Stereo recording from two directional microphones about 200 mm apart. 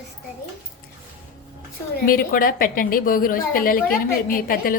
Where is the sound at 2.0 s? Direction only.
45° left (ahead or behind).